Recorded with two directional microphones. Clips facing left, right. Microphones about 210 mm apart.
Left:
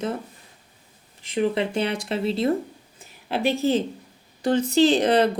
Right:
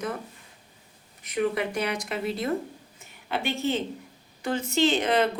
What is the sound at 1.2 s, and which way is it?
A woman's voice, 25° left (ahead or behind).